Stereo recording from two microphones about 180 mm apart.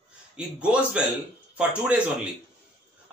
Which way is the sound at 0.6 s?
5° right (ahead or behind).